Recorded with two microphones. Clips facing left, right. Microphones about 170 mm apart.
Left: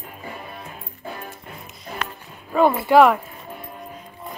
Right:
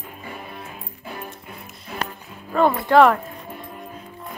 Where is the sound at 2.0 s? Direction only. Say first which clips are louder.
Right 2 dB; 35° right (ahead or behind).